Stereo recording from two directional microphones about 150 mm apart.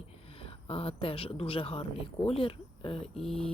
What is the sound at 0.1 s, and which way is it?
Speech, 40° left (ahead or behind).